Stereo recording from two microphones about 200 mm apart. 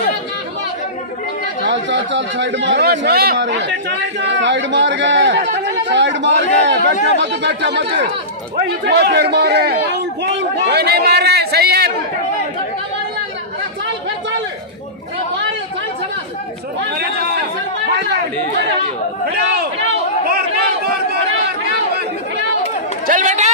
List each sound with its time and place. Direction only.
1.6 s a man's voice: 65° right (ahead or behind)
20.2 s crowd: 50° right (ahead or behind)
23.0 s chatter: 40° right (ahead or behind)